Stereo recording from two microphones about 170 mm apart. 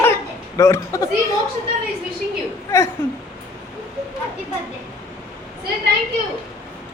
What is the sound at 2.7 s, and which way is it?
Speech, 15° left (ahead or behind).